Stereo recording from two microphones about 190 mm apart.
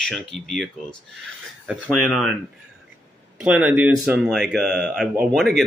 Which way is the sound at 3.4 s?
5° right (ahead or behind).